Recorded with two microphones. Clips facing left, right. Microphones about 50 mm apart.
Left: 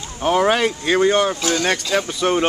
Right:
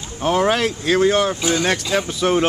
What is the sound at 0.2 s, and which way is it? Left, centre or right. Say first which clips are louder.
Speech: left 1 dB; centre.